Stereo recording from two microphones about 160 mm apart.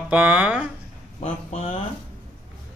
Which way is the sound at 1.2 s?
40° left (ahead or behind).